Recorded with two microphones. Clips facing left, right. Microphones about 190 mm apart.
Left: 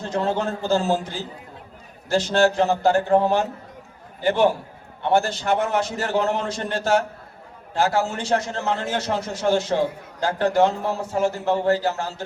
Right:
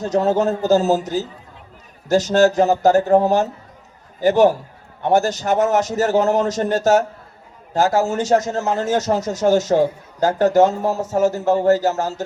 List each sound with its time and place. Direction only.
0.0 s a man's voice: 40° right (ahead or behind)